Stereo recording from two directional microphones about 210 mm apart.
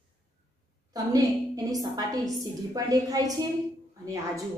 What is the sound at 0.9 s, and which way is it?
A woman's voice, 15° right (ahead or behind).